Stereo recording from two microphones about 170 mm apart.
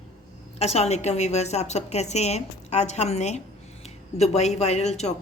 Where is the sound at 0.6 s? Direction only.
40° left (ahead or behind).